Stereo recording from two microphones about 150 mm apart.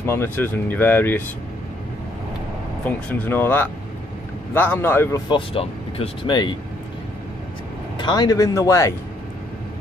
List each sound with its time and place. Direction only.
0.0 s speech: 15° left (ahead or behind)
2.8 s speech: 10° left (ahead or behind)
5.3 s speech: 40° left (ahead or behind)
8.0 s speech: 25° left (ahead or behind)